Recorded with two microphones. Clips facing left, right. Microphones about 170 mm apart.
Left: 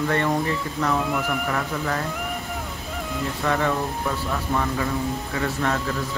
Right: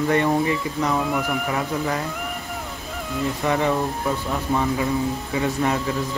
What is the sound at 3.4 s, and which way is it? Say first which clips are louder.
Speech: right 2 dB; 15° right (ahead or behind).